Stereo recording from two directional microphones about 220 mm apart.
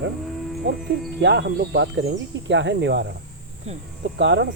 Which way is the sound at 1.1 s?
50° right (ahead or behind).